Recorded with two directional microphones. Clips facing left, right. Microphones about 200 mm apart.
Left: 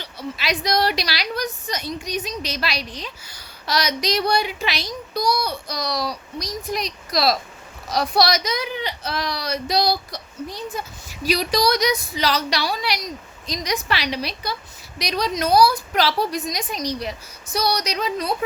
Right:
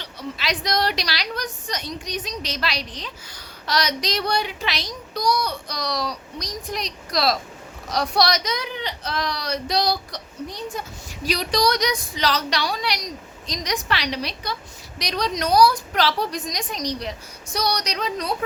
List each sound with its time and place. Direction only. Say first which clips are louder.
0.0 s a woman's voice: left 1 dB; 10° left (ahead or behind)